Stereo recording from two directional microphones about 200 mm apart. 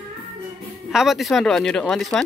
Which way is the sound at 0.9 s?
Centre (ahead or behind).